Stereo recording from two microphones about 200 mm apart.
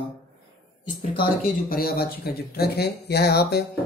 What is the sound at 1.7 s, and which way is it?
Speech, 50° left (ahead or behind).